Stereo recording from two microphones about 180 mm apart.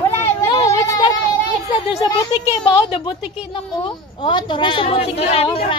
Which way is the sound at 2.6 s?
25° left (ahead or behind).